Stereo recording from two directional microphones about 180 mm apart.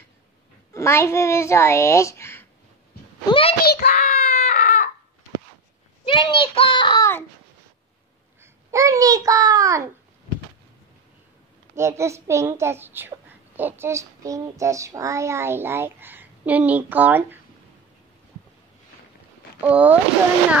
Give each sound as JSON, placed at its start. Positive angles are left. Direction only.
{"t": 0.7, "sound": "a child's voice", "side_deg": 15}
{"t": 3.3, "sound": "a child's voice", "side_deg": 30}
{"t": 3.6, "sound": "a sound", "side_deg": 60}
{"t": 6.0, "sound": "a sound", "side_deg": 30}
{"t": 8.4, "sound": "a child's voice", "side_deg": -15}
{"t": 11.7, "sound": "child singing", "side_deg": -15}
{"t": 19.6, "sound": "child singing", "side_deg": -10}